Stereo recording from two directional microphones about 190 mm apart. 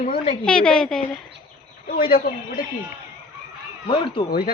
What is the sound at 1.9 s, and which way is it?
Speech, 50° left (ahead or behind).